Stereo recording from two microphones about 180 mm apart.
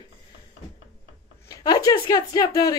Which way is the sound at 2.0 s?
20° left (ahead or behind).